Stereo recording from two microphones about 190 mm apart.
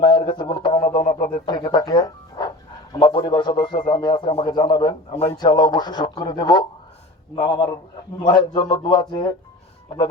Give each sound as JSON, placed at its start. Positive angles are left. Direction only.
{"t": 0.0, "sound": "a man's voice", "side_deg": 25}